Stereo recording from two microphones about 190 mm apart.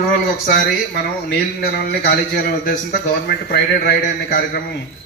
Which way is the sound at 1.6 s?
55° left (ahead or behind).